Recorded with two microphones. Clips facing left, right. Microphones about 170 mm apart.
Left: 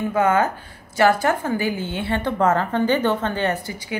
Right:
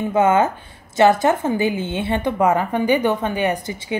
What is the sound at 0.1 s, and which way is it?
A woman's voice, 20° right (ahead or behind).